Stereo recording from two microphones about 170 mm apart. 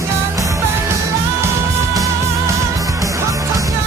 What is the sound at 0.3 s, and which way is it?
Music, 20° right (ahead or behind).